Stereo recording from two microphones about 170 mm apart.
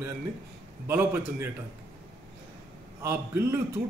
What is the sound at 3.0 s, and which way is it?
Speech, 15° right (ahead or behind).